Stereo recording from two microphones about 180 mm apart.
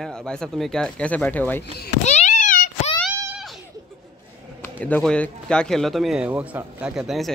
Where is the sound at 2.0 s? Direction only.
40° left (ahead or behind).